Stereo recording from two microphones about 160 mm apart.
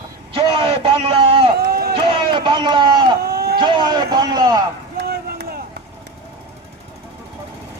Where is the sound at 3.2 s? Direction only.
80° right.